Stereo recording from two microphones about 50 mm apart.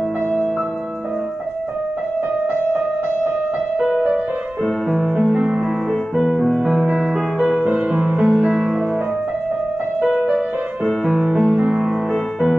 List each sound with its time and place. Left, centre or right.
5.1 s music: centre
6.1 s music: centre
6.6 s music: centre
8.2 s music: right
10.9 s music: centre
11.3 s music: centre
12.1 s music: centre